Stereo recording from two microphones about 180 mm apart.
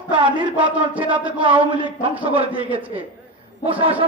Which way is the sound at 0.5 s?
10° right (ahead or behind).